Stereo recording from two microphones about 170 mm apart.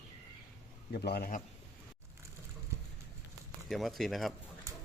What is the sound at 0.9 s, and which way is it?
Speech, 65° left (ahead or behind).